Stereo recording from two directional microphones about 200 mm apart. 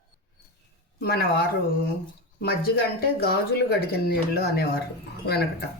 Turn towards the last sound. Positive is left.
turn(degrees=50)  # may be behind; listen again after turning